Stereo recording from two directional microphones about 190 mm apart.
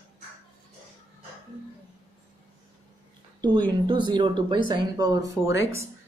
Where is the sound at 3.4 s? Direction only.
25° right (ahead or behind).